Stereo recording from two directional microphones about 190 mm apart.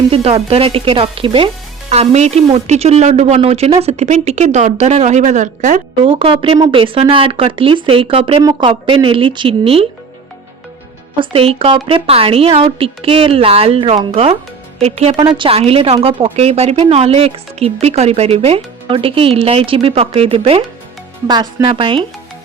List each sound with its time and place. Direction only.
0.1 s a woman's voice: 30° right (ahead or behind)
6.0 s a woman's voice: 25° right (ahead or behind)
11.2 s a woman's voice: 30° right (ahead or behind)